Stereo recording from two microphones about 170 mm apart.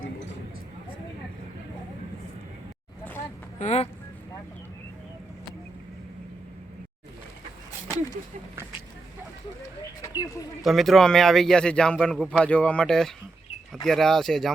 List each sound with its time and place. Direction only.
3.6 s speech: 40° left (ahead or behind)
10.0 s speech: 20° left (ahead or behind)
10.6 s a man's voice: centre (ahead or behind)